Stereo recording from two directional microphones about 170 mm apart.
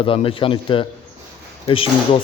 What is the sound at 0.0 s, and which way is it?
Speech, 30° left (ahead or behind).